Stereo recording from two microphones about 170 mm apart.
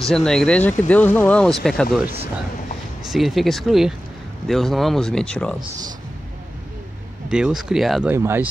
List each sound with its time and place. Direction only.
0.0 s speech: 5° left (ahead or behind)
3.1 s speech: centre (ahead or behind)
5.6 s speech: 25° right (ahead or behind)
7.2 s speech: 5° right (ahead or behind)
8.1 s speech: 15° right (ahead or behind)